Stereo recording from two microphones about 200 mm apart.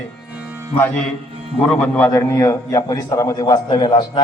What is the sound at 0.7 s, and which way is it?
A man's voice, 10° left (ahead or behind).